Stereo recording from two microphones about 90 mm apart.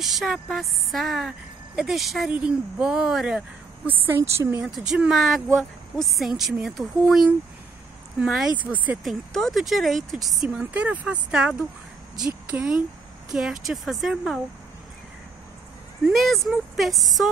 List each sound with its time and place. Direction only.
0.0 s a woman's voice: centre (ahead or behind)
4.2 s speech: 25° right (ahead or behind)
4.6 s a woman's voice: 5° right (ahead or behind)
8.6 s speech: 20° right (ahead or behind)
9.0 s a woman's voice: centre (ahead or behind)
16.1 s a woman's voice: centre (ahead or behind)